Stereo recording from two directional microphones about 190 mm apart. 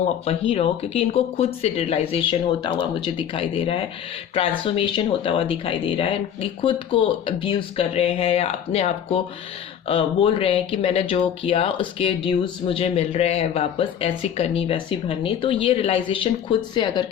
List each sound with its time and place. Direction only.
0.3 s speech: 30° left (ahead or behind)